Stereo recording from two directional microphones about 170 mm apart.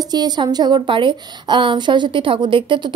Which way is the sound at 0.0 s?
25° right (ahead or behind).